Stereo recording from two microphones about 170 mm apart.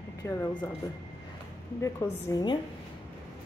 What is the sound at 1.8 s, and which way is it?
Speech, 20° left (ahead or behind).